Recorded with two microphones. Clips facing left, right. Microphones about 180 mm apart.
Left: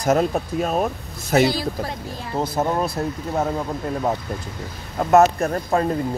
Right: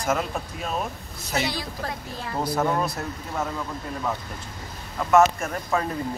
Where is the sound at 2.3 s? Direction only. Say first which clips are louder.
Left 2 dB; 25° left (ahead or behind).